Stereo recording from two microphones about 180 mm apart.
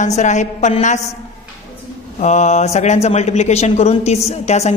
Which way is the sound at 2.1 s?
40° left (ahead or behind).